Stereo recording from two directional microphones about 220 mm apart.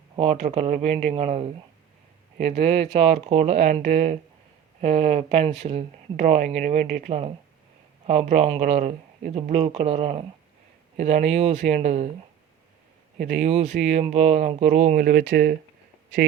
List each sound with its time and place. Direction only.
0.2 s speech: 30° right (ahead or behind)
13.1 s speech: 35° right (ahead or behind)